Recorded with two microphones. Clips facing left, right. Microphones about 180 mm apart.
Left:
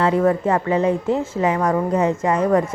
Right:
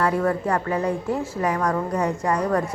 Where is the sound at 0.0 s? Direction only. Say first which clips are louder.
Left 5 dB; 20° left (ahead or behind).